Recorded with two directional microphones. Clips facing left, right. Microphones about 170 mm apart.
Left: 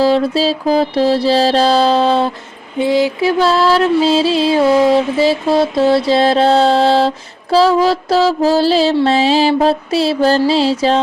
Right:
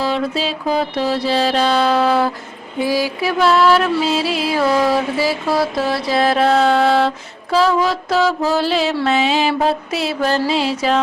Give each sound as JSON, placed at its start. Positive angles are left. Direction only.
{"t": 0.0, "sound": "music", "side_deg": 35}